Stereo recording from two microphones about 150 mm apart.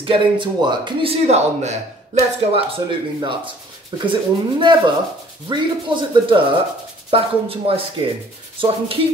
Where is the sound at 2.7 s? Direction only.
35° right (ahead or behind).